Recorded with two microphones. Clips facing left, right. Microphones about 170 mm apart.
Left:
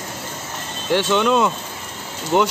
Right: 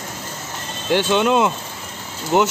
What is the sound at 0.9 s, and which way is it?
Speech, 5° right (ahead or behind).